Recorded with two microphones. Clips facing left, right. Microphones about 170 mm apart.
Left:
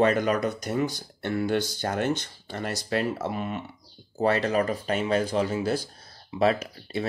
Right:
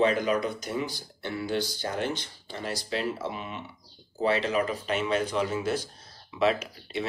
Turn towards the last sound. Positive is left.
turn(degrees=40)  # may be behind; listen again after turning